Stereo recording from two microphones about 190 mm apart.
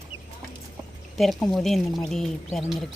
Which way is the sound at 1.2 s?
Centre (ahead or behind).